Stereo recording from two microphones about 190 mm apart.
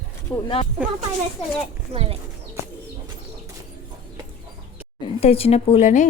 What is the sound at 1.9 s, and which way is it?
Speech, 30° right (ahead or behind).